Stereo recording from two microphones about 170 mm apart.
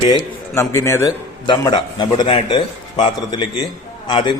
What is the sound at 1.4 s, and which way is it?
Speech, 25° left (ahead or behind).